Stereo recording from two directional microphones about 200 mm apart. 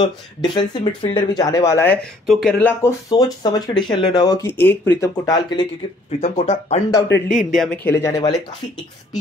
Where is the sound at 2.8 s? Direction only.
20° left (ahead or behind).